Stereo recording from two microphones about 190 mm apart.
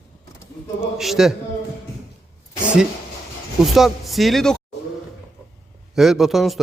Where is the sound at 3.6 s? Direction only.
Centre (ahead or behind).